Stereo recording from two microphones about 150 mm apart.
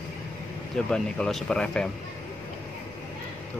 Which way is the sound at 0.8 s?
5° left (ahead or behind).